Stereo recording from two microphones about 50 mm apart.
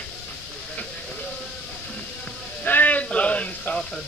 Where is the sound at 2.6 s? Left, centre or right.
Left.